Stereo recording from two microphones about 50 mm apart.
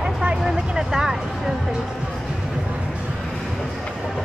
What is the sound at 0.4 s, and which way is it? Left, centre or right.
Speech, centre.